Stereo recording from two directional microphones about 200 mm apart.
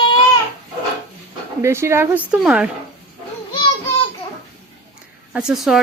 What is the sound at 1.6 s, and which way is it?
Speech, 15° right (ahead or behind).